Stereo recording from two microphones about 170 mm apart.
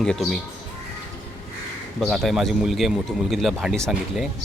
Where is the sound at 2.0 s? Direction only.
Centre (ahead or behind).